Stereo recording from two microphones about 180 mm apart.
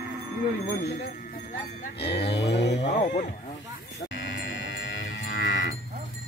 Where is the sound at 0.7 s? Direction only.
60° left (ahead or behind).